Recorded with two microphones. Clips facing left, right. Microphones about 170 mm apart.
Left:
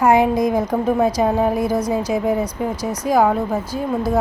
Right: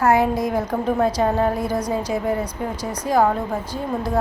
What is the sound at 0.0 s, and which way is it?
Speech, 15° left (ahead or behind).